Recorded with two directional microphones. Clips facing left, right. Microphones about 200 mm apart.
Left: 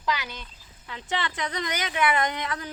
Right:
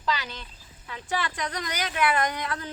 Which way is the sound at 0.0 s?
15° left (ahead or behind).